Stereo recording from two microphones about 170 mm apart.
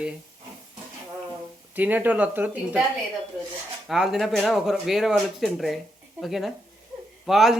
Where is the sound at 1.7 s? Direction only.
10° right (ahead or behind).